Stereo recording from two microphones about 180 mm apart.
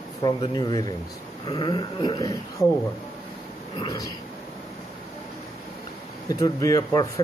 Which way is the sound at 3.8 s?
20° left (ahead or behind).